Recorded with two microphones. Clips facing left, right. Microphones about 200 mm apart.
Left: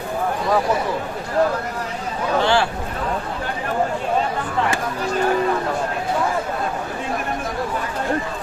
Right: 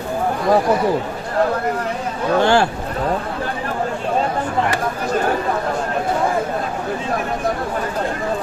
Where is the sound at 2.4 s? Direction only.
50° right (ahead or behind).